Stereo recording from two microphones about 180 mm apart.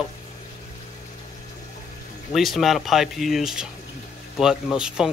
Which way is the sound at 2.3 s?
Centre (ahead or behind).